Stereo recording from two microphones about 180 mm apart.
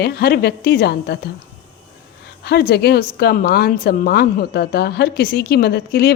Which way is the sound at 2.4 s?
65° left (ahead or behind).